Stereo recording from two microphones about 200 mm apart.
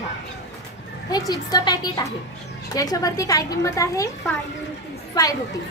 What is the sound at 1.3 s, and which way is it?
A woman's voice, 20° left (ahead or behind).